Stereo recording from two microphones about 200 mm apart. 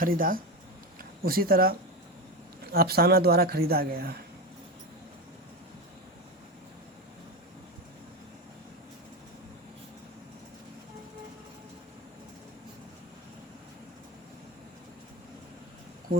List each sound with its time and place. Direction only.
0.0 s speech: 45° right (ahead or behind)
2.7 s speech: 50° right (ahead or behind)